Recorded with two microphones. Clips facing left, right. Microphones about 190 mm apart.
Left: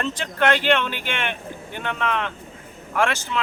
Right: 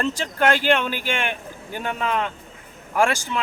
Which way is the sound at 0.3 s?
40° right (ahead or behind).